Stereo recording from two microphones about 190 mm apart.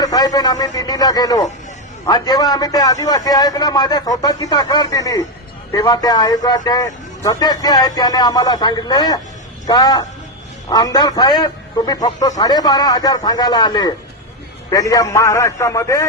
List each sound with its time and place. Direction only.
0.0 s a man's voice: 20° left (ahead or behind)